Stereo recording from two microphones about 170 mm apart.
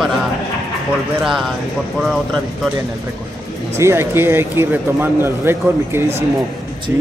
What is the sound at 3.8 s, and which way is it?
Speech, 15° right (ahead or behind).